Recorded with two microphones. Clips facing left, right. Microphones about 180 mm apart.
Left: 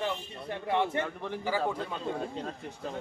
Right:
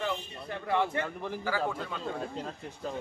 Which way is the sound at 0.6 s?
20° left (ahead or behind).